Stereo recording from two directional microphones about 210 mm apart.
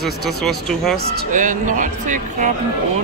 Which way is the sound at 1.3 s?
40° right (ahead or behind).